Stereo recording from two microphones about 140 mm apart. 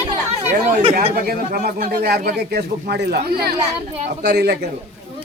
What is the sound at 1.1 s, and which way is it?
Speech, 90° right.